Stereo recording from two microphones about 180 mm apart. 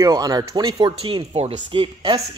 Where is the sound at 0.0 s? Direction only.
20° right (ahead or behind).